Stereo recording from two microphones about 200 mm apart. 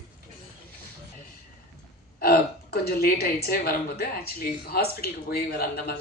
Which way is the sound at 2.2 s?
50° left (ahead or behind).